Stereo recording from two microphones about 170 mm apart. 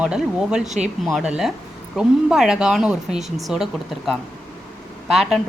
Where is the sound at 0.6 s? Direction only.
45° right (ahead or behind).